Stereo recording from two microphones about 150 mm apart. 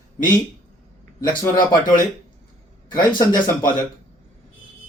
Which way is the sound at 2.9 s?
30° left (ahead or behind).